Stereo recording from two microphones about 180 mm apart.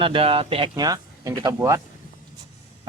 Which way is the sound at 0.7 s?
20° right (ahead or behind).